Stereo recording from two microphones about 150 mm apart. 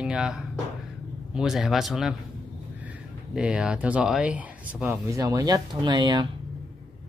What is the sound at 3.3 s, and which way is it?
Speech, 5° right (ahead or behind).